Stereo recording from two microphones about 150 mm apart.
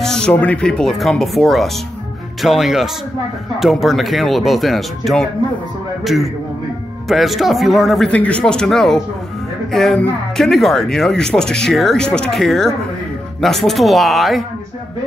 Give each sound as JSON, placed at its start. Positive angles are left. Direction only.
{"t": 0.0, "sound": "speech", "side_deg": 5}